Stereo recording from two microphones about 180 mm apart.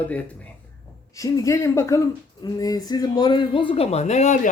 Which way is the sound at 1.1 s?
20° left (ahead or behind).